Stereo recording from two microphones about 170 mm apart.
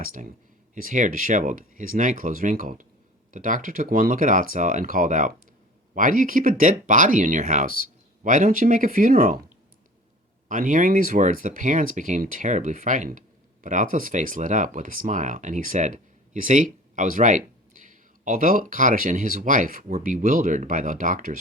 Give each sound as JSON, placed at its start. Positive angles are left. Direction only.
{"t": 0.0, "sound": "speech", "side_deg": -55}
{"t": 10.5, "sound": "speech", "side_deg": -50}